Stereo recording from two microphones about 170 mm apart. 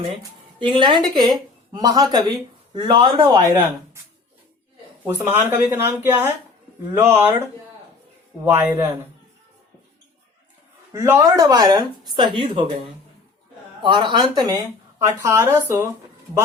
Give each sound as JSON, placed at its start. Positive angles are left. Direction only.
{"t": 0.2, "sound": "a woman's voice", "side_deg": -30}
{"t": 5.4, "sound": "speech", "side_deg": -15}
{"t": 8.4, "sound": "speech", "side_deg": -10}
{"t": 10.9, "sound": "speech", "side_deg": -15}
{"t": 13.8, "sound": "speech", "side_deg": -30}